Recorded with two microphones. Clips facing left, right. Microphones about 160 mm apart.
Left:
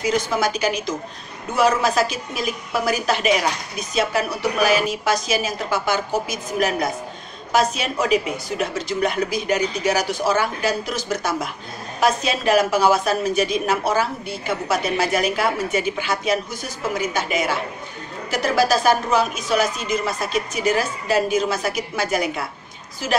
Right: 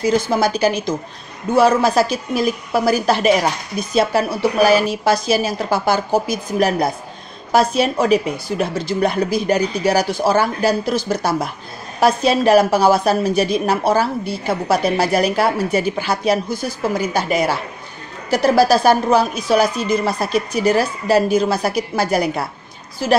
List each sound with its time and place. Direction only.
0.0 s a woman's voice: 30° right (ahead or behind)